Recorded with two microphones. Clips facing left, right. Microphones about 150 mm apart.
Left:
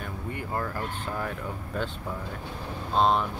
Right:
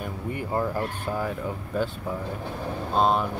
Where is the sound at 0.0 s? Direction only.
15° right (ahead or behind).